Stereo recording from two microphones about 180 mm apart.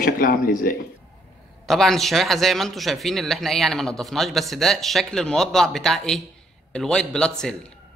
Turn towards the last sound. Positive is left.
turn(degrees=5)  # may be behind; listen again after turning